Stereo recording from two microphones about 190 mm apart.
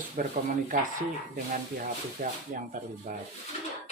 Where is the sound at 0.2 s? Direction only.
50° right (ahead or behind).